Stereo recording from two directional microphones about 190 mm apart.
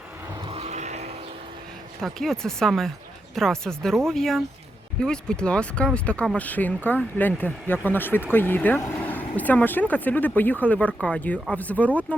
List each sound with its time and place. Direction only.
0.4 s vehicle: 35° right (ahead or behind)
2.0 s speech: centre (ahead or behind)